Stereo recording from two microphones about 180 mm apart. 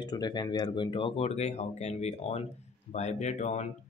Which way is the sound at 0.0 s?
25° left (ahead or behind).